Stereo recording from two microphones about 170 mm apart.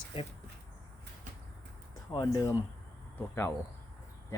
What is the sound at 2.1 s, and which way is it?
Speech, 20° left (ahead or behind).